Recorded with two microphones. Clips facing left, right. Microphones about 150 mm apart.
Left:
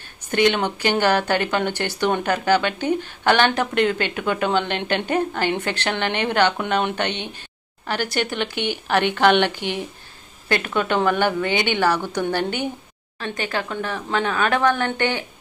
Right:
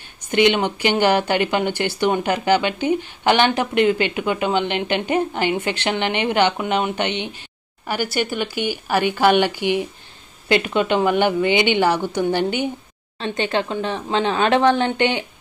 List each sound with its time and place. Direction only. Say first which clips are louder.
0.5 s speech: right 2 dB; 15° right (ahead or behind)